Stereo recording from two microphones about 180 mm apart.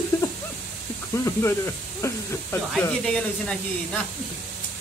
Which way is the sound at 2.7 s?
5° left (ahead or behind).